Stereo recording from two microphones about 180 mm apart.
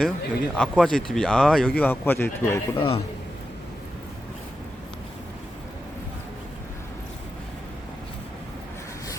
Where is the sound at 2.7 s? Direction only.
30° left (ahead or behind).